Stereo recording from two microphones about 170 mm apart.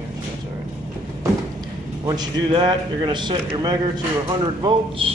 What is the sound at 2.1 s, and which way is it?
A man's voice, 25° right (ahead or behind).